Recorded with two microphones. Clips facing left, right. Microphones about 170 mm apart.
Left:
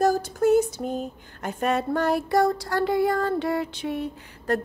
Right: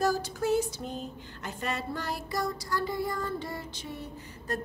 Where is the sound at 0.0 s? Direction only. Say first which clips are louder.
Left 7 dB; 50° left (ahead or behind).